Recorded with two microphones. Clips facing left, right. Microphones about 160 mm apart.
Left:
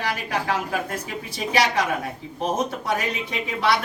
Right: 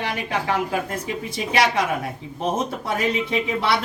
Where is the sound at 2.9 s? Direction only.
25° right (ahead or behind).